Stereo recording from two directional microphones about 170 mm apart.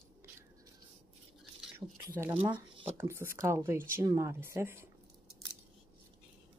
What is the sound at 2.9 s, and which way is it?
Speech, 15° right (ahead or behind).